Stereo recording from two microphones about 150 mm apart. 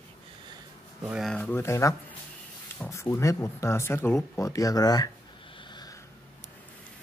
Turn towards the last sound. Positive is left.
turn(degrees=30)  # may be behind; listen again after turning